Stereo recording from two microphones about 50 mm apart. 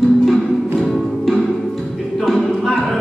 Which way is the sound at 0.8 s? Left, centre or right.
Centre.